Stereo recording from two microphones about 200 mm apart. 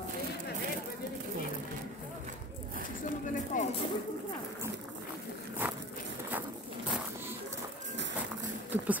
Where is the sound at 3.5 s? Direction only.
40° left (ahead or behind).